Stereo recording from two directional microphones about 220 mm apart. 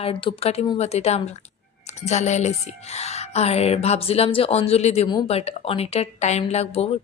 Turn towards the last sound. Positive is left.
turn(degrees=30)  # may be behind; listen again after turning